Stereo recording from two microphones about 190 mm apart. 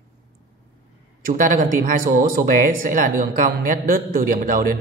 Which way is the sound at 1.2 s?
45° right (ahead or behind).